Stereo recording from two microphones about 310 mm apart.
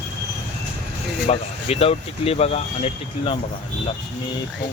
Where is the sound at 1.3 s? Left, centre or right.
Centre.